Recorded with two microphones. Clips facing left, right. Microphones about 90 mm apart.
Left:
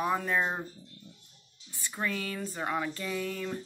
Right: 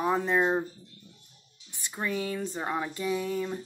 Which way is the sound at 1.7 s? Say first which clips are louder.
Right 2 dB; 20° right (ahead or behind).